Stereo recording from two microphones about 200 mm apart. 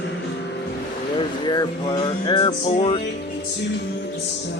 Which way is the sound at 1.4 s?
20° left (ahead or behind).